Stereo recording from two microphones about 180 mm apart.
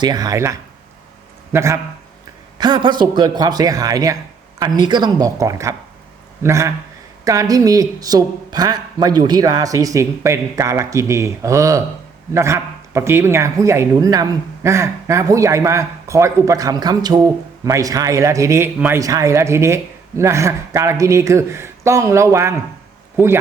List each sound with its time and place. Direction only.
0.0 s speech: 20° right (ahead or behind)